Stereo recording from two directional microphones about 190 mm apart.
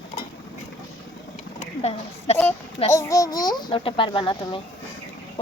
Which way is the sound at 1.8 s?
35° left (ahead or behind).